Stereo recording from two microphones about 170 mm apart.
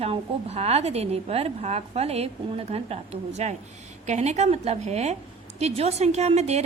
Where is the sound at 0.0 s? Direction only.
35° right (ahead or behind).